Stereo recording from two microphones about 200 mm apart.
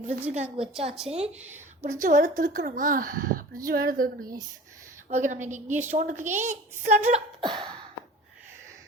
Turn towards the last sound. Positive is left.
turn(degrees=-25)  # may be behind; listen again after turning